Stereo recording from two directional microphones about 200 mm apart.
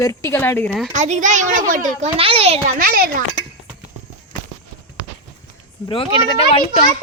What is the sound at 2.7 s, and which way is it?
Speech, 45° right (ahead or behind).